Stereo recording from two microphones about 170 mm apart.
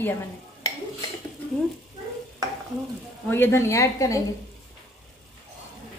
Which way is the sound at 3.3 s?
15° left (ahead or behind).